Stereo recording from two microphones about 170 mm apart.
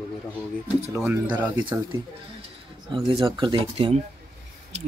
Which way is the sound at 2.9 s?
25° right (ahead or behind).